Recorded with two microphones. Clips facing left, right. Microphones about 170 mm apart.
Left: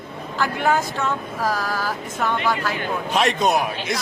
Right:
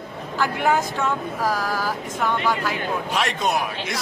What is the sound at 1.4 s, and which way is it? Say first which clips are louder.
Vehicle: even; 10° right (ahead or behind).